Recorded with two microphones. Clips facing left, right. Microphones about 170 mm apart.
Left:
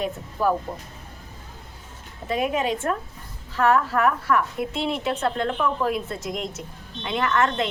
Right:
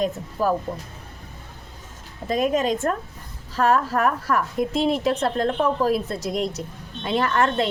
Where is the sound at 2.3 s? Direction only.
40° right (ahead or behind).